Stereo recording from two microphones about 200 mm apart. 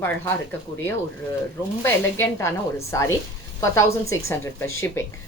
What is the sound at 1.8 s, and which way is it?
A woman's voice, 10° left (ahead or behind).